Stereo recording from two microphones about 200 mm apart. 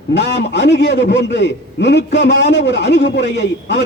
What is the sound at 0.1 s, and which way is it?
A man's voice, 60° left (ahead or behind).